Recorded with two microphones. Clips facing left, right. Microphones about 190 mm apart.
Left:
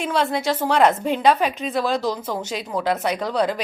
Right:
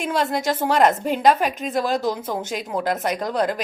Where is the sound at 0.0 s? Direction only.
45° right (ahead or behind).